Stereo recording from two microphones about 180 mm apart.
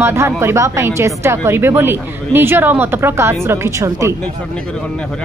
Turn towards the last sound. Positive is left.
turn(degrees=-15)  # may be behind; listen again after turning